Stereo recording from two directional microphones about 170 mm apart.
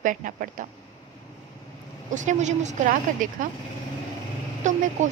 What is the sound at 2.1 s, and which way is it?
Speech, 45° right (ahead or behind).